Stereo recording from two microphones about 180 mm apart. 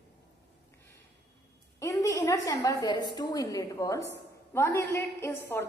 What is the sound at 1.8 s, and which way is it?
A woman's voice, 15° left (ahead or behind).